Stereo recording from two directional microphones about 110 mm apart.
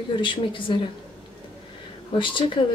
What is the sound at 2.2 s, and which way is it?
Speech, 50° left (ahead or behind).